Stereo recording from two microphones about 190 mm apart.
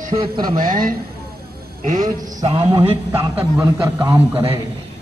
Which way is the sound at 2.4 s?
30° right (ahead or behind).